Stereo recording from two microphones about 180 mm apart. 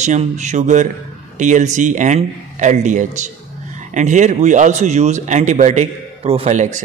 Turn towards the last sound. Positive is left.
turn(degrees=-45)  # may be behind; listen again after turning